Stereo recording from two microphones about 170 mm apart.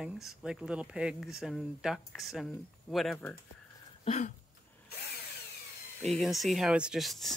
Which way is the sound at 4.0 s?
40° left (ahead or behind).